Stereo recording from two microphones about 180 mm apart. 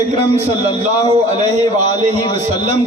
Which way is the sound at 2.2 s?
25° left (ahead or behind).